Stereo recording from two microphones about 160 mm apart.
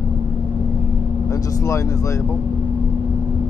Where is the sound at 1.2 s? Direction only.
20° left (ahead or behind).